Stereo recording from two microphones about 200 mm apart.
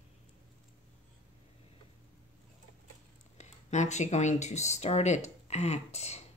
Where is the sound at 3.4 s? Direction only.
35° left (ahead or behind).